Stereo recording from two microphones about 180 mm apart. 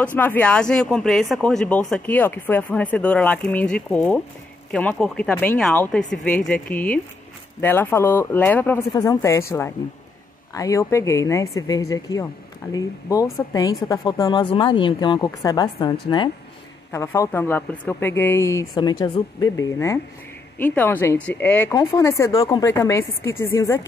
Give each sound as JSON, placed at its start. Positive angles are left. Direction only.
{"t": 0.0, "sound": "speech", "side_deg": 10}
{"t": 8.9, "sound": "speech", "side_deg": 20}